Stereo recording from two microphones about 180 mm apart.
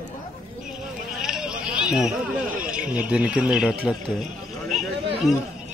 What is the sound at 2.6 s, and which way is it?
Speech, 5° right (ahead or behind).